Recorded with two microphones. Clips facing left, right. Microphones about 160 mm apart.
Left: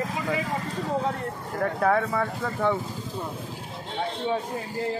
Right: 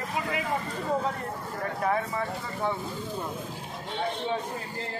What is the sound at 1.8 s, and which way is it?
Speech, 70° left (ahead or behind).